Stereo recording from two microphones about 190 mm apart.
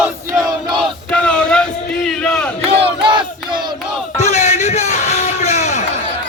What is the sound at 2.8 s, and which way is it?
Battle cry, 25° right (ahead or behind).